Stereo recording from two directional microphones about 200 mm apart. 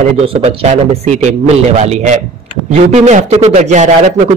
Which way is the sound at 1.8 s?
35° right (ahead or behind).